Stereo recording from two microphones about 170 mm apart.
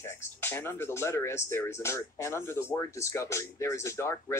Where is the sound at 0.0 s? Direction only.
15° left (ahead or behind).